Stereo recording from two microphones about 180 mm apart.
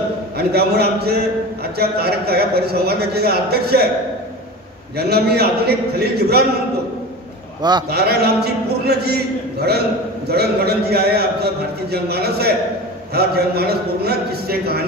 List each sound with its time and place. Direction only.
0.4 s a man's voice: 60° right (ahead or behind)
4.9 s a man's voice: 60° right (ahead or behind)
7.9 s a man's voice: 60° right (ahead or behind)